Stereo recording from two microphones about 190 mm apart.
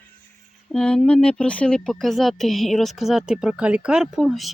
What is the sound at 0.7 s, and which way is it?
Speech, 5° left (ahead or behind).